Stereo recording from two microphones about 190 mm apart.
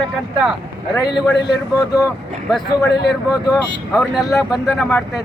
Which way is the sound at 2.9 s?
60° left (ahead or behind).